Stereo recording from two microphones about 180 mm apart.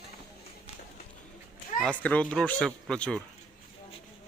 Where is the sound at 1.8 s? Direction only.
5° left (ahead or behind).